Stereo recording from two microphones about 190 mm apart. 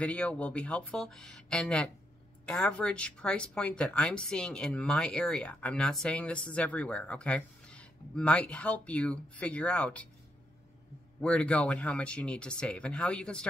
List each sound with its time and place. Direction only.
0.0 s speech: 5° left (ahead or behind)
11.1 s speech: 5° left (ahead or behind)